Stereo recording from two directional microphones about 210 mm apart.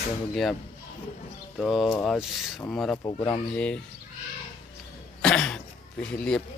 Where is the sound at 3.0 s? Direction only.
20° left (ahead or behind).